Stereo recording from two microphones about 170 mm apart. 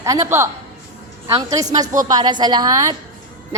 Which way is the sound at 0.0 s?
20° right (ahead or behind).